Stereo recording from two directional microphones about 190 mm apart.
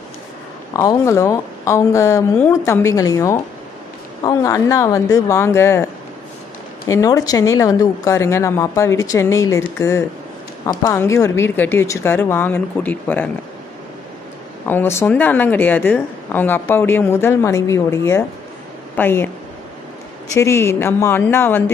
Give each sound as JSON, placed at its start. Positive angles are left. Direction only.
{"t": 0.7, "sound": "speech", "side_deg": 15}
{"t": 6.9, "sound": "speech", "side_deg": 15}
{"t": 14.7, "sound": "speech", "side_deg": 10}
{"t": 20.3, "sound": "speech", "side_deg": 15}